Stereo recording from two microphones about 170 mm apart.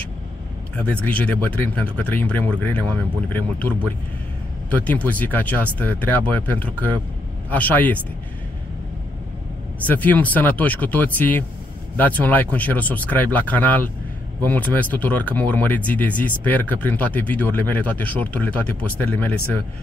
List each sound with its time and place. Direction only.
0.7 s speech: 10° left (ahead or behind)
9.8 s speech: 10° left (ahead or behind)